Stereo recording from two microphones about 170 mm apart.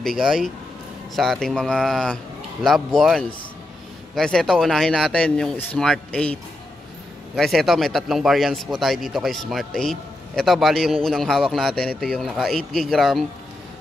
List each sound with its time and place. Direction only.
0.0 s a man's voice: centre (ahead or behind)
7.3 s a man's voice: centre (ahead or behind)